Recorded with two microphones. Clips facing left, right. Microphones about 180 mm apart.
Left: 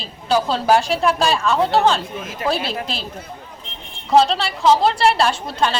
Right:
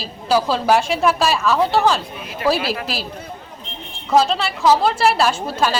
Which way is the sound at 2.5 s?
25° left (ahead or behind).